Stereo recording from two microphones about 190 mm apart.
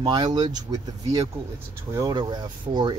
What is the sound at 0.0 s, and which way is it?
Speech, 20° right (ahead or behind).